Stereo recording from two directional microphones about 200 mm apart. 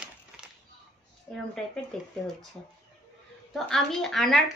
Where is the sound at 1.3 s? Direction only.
5° left (ahead or behind).